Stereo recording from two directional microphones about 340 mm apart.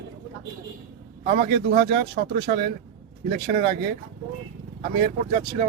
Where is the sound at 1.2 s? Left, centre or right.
Right.